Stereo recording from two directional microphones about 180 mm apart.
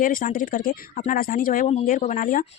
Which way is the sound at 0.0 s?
50° left (ahead or behind).